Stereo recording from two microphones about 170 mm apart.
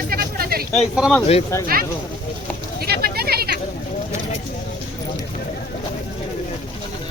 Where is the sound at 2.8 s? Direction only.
65° right (ahead or behind).